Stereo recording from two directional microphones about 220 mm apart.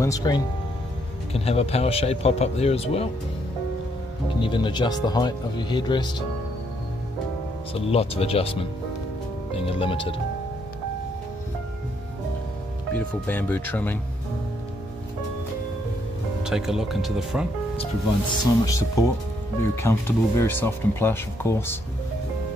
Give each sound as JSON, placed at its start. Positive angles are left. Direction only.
{"t": 0.0, "sound": "speech", "side_deg": 15}
{"t": 1.3, "sound": "speech", "side_deg": 25}
{"t": 4.4, "sound": "speech", "side_deg": 20}
{"t": 7.7, "sound": "speech", "side_deg": 25}
{"t": 12.9, "sound": "speech", "side_deg": 5}
{"t": 16.4, "sound": "speech", "side_deg": 0}
{"t": 18.4, "sound": "speech", "side_deg": 15}